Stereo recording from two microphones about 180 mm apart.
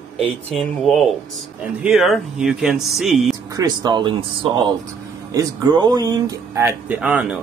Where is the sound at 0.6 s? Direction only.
Centre (ahead or behind).